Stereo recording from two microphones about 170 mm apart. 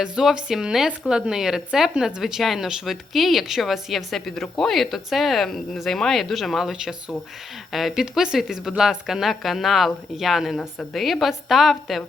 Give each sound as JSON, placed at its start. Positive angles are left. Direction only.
{"t": 0.0, "sound": "a woman's voice", "side_deg": -5}